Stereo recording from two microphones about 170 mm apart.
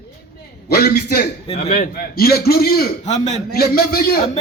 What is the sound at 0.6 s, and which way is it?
Music, 65° left (ahead or behind).